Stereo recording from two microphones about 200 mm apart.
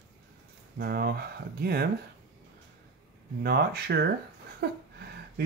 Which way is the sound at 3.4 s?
50° right (ahead or behind).